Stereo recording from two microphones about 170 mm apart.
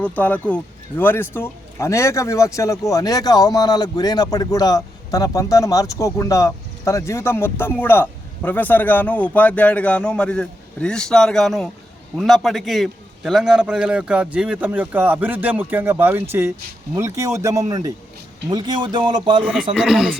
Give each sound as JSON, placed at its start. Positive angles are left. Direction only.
{"t": 0.0, "sound": "a man's voice", "side_deg": 10}
{"t": 19.4, "sound": "a man's voice", "side_deg": -5}